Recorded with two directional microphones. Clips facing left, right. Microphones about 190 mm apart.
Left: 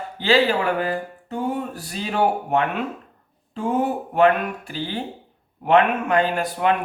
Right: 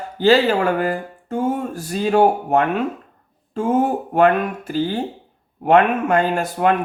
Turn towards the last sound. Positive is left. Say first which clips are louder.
# right 3 dB
turn(degrees=-45)  # may be behind; listen again after turning